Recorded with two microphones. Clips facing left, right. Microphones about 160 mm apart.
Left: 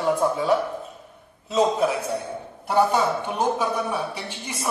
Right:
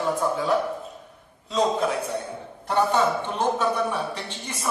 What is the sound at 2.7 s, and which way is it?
A man's voice, 10° left (ahead or behind).